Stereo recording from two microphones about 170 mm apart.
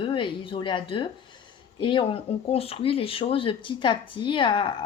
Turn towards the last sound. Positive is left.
turn(degrees=30)  # may be behind; listen again after turning